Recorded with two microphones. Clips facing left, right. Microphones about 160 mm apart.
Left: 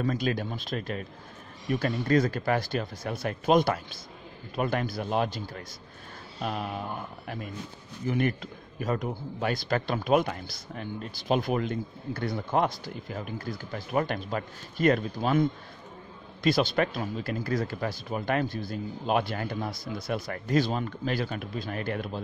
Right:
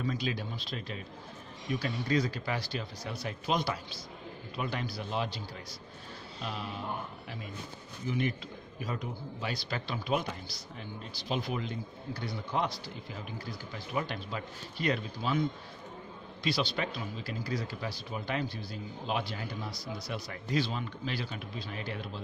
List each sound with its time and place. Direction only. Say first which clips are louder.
0.0 s a man's voice: left 6 dB; 50° left (ahead or behind)
8.1 s a man's voice: left 5 dB; 55° left (ahead or behind)
16.4 s a man's voice: left 8 dB; 50° left (ahead or behind)